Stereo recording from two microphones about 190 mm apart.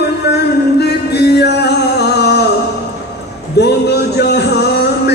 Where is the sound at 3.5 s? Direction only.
60° left (ahead or behind).